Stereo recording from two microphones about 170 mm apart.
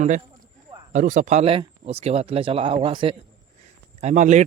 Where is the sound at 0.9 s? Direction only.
45° right (ahead or behind); by 3.2 s 30° right (ahead or behind).